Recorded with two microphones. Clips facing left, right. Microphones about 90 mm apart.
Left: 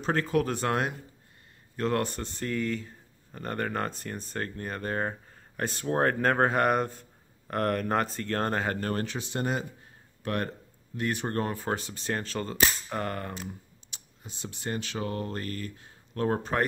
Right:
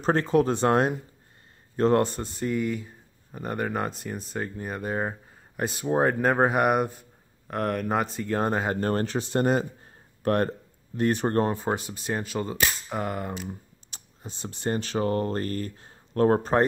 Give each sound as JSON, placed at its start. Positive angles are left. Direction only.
{"t": 0.0, "sound": "a man's voice", "side_deg": -30}
{"t": 7.5, "sound": "speech", "side_deg": 0}
{"t": 8.7, "sound": "speech", "side_deg": -35}
{"t": 13.5, "sound": "speech", "side_deg": -40}